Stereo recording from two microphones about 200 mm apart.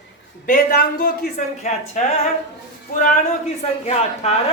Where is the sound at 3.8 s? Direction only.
30° left (ahead or behind).